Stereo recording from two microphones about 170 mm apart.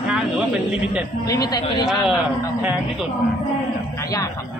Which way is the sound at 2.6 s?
5° right (ahead or behind).